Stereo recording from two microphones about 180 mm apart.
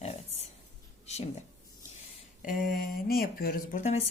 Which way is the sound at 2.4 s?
50° left (ahead or behind).